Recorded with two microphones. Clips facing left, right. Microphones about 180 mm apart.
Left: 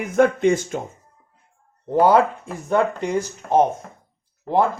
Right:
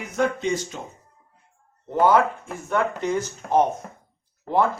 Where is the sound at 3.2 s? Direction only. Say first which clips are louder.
Left 4 dB; 25° left (ahead or behind).